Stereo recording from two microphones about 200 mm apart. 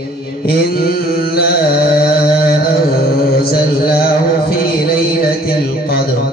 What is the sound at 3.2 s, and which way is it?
Mantra, 50° left (ahead or behind).